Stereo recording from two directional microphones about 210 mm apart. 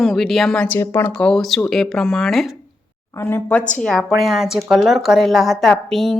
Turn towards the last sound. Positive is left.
turn(degrees=0)  # may be behind; listen again after turning